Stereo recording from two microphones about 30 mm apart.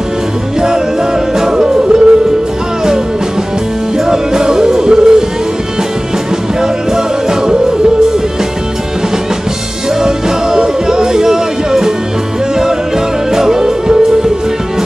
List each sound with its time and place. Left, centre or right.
1.3 s music: right
4.0 s music: right
6.6 s music: right
10.0 s music: right
13.3 s music: centre